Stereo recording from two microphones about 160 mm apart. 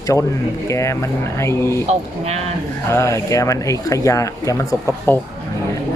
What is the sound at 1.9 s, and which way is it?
Speech, 40° right (ahead or behind).